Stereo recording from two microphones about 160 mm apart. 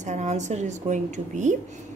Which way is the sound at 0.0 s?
45° right (ahead or behind).